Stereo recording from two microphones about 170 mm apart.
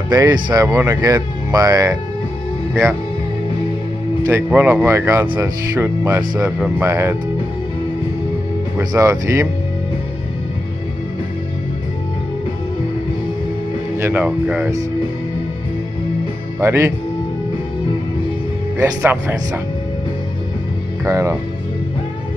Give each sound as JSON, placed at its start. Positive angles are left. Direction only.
{"t": 0.1, "sound": "speech", "side_deg": -25}
{"t": 4.2, "sound": "speech", "side_deg": -15}
{"t": 8.7, "sound": "speech", "side_deg": -20}
{"t": 13.9, "sound": "speech", "side_deg": -10}
{"t": 16.5, "sound": "speech", "side_deg": -15}
{"t": 18.8, "sound": "speech", "side_deg": -15}
{"t": 21.0, "sound": "speech", "side_deg": -15}